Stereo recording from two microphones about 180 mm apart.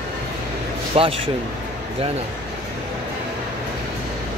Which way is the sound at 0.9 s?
35° right (ahead or behind).